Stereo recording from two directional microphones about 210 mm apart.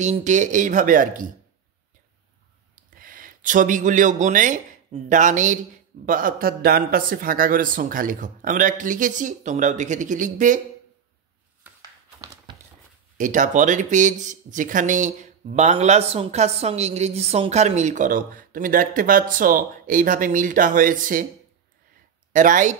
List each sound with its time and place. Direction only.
0.0 s speech: 35° right (ahead or behind)
2.7 s speech: 40° right (ahead or behind)
11.6 s a sound: 10° right (ahead or behind)
13.2 s speech: 35° right (ahead or behind)
22.3 s speech: 35° right (ahead or behind)